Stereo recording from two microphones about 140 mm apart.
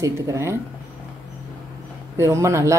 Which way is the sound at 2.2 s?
20° right (ahead or behind).